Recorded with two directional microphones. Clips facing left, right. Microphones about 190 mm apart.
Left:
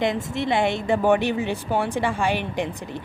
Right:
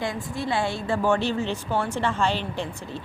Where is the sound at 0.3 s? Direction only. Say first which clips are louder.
Left 2 dB; 20° left (ahead or behind).